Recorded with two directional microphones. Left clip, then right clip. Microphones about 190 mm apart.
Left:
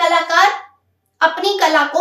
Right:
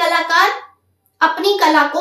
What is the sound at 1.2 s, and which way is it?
Speech, 20° left (ahead or behind).